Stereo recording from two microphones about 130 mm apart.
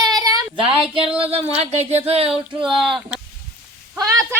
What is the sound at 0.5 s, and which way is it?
Female singing, 45° right (ahead or behind).